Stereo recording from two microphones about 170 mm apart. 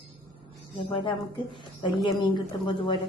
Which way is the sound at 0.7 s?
30° left (ahead or behind).